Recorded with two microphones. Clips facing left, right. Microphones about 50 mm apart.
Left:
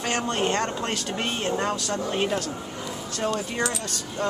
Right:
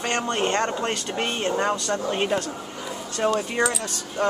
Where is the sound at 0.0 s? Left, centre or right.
Centre.